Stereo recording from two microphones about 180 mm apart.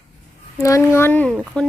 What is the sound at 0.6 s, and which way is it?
Speech, 15° left (ahead or behind).